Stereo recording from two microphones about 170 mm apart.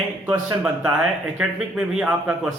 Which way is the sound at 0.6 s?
5° right (ahead or behind).